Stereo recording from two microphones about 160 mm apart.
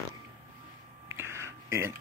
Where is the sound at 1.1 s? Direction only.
15° right (ahead or behind).